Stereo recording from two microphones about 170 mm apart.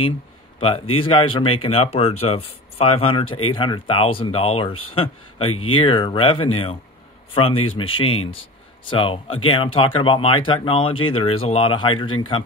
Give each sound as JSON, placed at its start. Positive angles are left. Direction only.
{"t": 0.6, "sound": "speech", "side_deg": 30}